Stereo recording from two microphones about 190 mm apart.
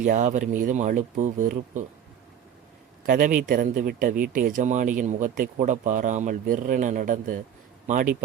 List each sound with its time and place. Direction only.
0.0 s speech: 40° right (ahead or behind)
3.1 s speech: 45° right (ahead or behind)